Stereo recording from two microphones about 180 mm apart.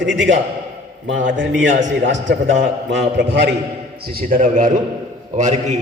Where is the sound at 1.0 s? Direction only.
90° right; by 3.4 s 75° right (ahead or behind).